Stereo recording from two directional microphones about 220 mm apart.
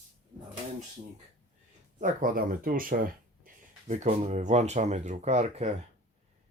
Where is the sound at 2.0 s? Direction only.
40° right (ahead or behind).